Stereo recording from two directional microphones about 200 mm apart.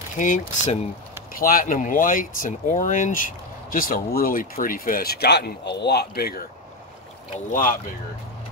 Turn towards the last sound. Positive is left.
turn(degrees=40)  # may be behind; listen again after turning